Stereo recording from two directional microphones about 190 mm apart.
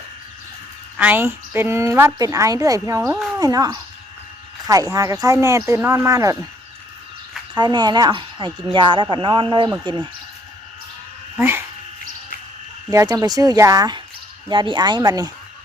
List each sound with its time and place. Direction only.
0.9 s a woman's voice: 10° right (ahead or behind)
7.5 s speech: 20° right (ahead or behind)
11.3 s a woman's voice: 10° right (ahead or behind)
12.9 s speech: 20° right (ahead or behind)